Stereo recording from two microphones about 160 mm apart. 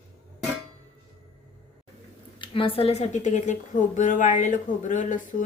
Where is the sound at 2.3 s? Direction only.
30° left (ahead or behind).